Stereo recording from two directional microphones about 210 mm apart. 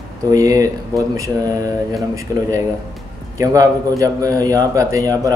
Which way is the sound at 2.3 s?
15° right (ahead or behind).